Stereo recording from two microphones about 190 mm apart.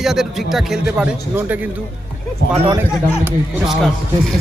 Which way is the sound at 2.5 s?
30° right (ahead or behind).